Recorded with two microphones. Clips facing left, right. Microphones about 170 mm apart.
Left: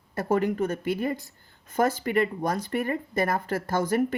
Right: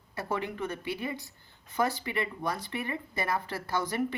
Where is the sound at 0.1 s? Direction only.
45° left (ahead or behind).